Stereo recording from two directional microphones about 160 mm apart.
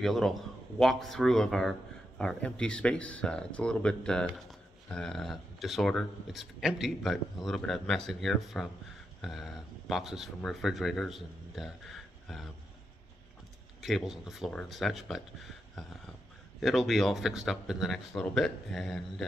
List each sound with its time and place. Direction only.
0.0 s speech: centre (ahead or behind)
13.7 s speech: centre (ahead or behind)
16.5 s speech: centre (ahead or behind)